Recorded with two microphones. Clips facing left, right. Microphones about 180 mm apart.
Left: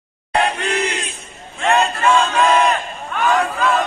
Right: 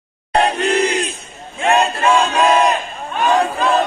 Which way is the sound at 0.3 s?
30° right (ahead or behind).